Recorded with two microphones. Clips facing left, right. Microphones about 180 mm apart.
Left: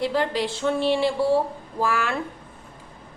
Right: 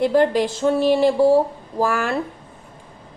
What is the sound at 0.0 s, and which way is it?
A woman's voice, 50° right (ahead or behind).